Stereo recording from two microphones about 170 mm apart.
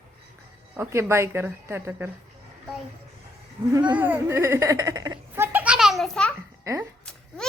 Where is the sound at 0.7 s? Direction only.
15° right (ahead or behind).